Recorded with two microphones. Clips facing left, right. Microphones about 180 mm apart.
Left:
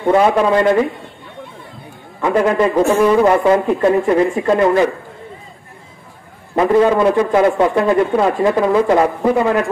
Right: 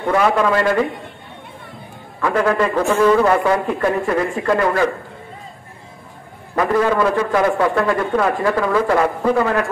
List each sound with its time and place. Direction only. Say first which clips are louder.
0.1 s a man's voice: left 4 dB; 25° left (ahead or behind)
2.2 s a man's voice: left 3 dB; 20° left (ahead or behind)
6.5 s a man's voice: left 4 dB; 25° left (ahead or behind)